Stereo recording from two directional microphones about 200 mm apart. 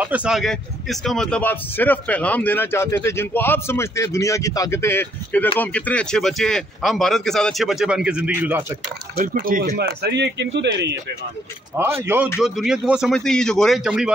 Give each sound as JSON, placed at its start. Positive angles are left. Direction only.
{"t": 0.0, "sound": "speech", "side_deg": -5}
{"t": 9.1, "sound": "speech", "side_deg": -45}
{"t": 11.7, "sound": "speech", "side_deg": -10}